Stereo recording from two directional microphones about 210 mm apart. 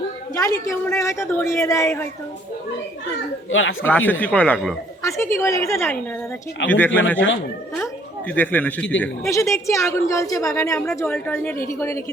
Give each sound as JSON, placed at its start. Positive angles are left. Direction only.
{"t": 0.3, "sound": "speech", "side_deg": 15}
{"t": 3.5, "sound": "speech", "side_deg": 70}
{"t": 3.8, "sound": "speech", "side_deg": 10}
{"t": 5.0, "sound": "speech", "side_deg": 15}
{"t": 8.3, "sound": "speech", "side_deg": 5}